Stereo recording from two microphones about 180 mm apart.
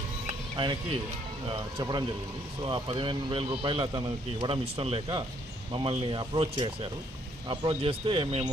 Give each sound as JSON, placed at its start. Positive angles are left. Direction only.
{"t": 0.5, "sound": "speech", "side_deg": -25}
{"t": 1.8, "sound": "speech", "side_deg": -25}